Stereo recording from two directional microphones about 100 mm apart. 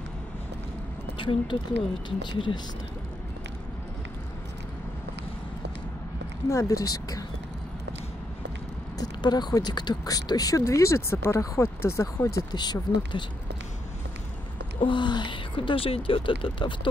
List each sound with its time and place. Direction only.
1.1 s speech: 55° left (ahead or behind)
6.5 s speech: 30° left (ahead or behind)
8.9 s speech: 45° left (ahead or behind)
12.5 s speech: 45° left (ahead or behind)
14.8 s speech: 55° left (ahead or behind)